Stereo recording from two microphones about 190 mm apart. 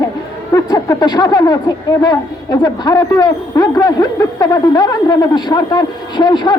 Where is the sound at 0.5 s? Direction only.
20° left (ahead or behind).